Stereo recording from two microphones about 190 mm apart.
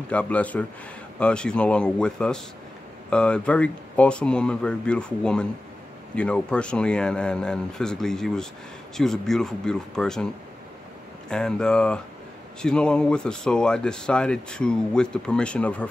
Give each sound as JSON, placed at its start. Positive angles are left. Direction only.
{"t": 0.1, "sound": "a man's voice", "side_deg": 5}
{"t": 11.2, "sound": "speech", "side_deg": 5}